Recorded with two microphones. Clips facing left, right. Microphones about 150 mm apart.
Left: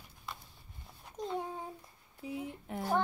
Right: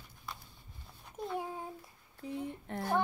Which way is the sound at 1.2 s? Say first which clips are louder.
Left 1 dB; 5° right (ahead or behind).